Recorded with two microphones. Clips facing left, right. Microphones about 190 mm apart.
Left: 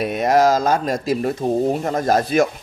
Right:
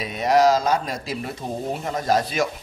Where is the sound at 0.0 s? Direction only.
55° left (ahead or behind).